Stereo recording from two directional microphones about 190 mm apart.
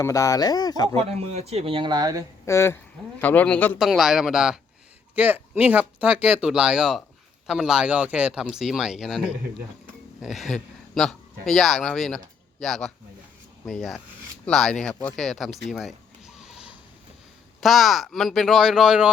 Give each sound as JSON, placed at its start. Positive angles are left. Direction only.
{"t": 0.0, "sound": "speech", "side_deg": 15}
{"t": 0.9, "sound": "speech", "side_deg": -35}
{"t": 2.5, "sound": "a man's voice", "side_deg": 15}
{"t": 15.7, "sound": "a sound", "side_deg": 0}
{"t": 17.6, "sound": "speech", "side_deg": 0}